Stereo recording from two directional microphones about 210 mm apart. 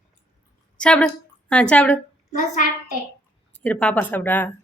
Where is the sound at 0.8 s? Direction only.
5° left (ahead or behind).